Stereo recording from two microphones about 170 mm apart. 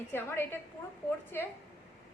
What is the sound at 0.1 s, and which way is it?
A woman's voice, 15° left (ahead or behind).